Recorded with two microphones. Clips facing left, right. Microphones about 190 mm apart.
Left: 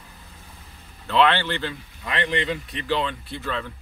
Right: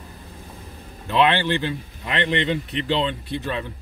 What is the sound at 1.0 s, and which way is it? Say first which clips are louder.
A man's voice: right 1 dB; 15° right (ahead or behind).